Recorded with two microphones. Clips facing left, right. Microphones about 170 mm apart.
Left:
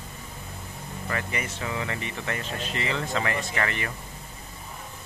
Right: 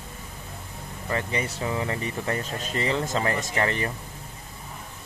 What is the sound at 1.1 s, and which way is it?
Speech, 30° right (ahead or behind).